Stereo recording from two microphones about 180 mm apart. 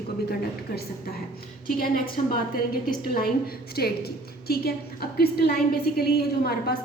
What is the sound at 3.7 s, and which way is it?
A woman's voice, 60° left (ahead or behind).